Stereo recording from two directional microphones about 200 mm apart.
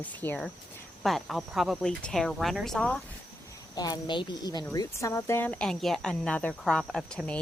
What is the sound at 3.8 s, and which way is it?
A woman's voice, 20° left (ahead or behind).